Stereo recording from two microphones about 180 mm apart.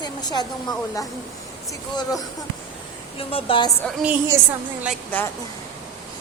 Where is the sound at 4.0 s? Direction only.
10° right (ahead or behind).